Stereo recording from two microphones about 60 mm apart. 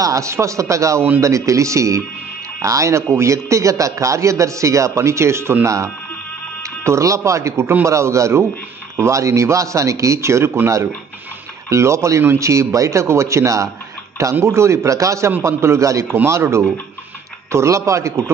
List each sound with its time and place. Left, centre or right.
0.0 s a man's voice: right
6.8 s a man's voice: right
11.7 s a man's voice: right